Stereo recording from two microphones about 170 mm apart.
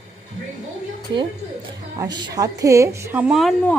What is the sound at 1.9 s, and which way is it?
A woman's voice, 25° right (ahead or behind).